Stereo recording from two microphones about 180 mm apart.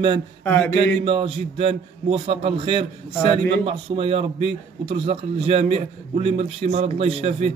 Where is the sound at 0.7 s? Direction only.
30° right (ahead or behind).